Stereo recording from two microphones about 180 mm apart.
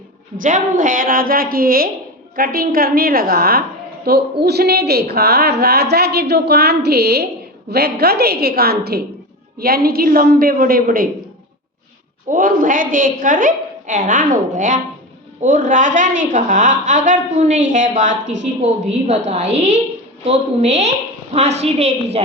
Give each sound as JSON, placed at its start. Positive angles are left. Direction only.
{"t": 0.4, "sound": "a woman's voice", "side_deg": -45}
{"t": 12.3, "sound": "a woman's voice", "side_deg": -50}